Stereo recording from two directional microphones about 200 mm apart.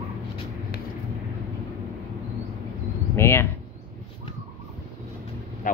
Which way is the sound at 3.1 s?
10° left (ahead or behind).